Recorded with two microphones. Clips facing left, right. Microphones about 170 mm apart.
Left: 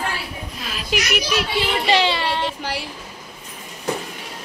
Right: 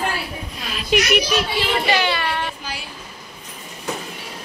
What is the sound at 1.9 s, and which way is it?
Speech, 25° left (ahead or behind).